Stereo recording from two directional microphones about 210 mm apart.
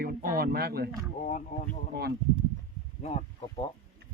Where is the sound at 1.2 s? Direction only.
35° left (ahead or behind).